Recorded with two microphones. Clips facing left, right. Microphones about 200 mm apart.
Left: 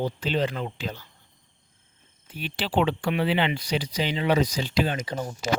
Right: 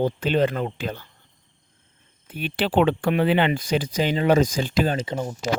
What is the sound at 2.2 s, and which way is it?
Speech, 55° right (ahead or behind).